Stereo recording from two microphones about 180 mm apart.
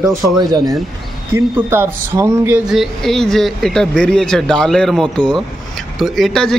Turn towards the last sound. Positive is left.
turn(degrees=5)  # may be behind; listen again after turning